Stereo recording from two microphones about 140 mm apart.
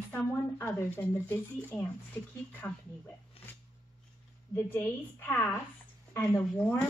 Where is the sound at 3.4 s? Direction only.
45° left (ahead or behind).